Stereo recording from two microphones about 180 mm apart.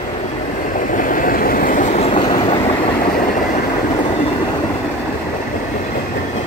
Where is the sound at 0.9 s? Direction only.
45° left (ahead or behind); by 2.6 s 30° left (ahead or behind).